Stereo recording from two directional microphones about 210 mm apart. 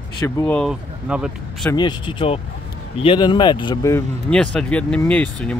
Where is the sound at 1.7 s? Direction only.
20° left (ahead or behind).